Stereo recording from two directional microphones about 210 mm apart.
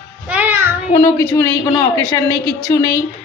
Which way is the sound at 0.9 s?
15° left (ahead or behind).